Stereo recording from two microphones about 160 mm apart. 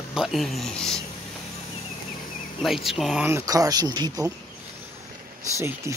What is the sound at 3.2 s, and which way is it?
Speech, 20° right (ahead or behind).